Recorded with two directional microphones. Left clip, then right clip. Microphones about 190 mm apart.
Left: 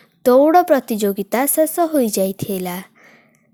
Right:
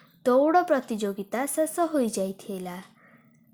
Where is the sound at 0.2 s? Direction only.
35° left (ahead or behind).